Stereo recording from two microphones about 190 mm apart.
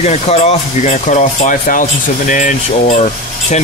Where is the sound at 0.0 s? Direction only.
35° left (ahead or behind).